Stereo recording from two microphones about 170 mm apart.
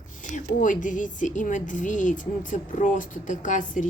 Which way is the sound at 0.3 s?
50° left (ahead or behind).